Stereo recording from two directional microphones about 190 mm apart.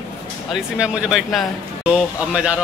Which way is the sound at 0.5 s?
5° right (ahead or behind).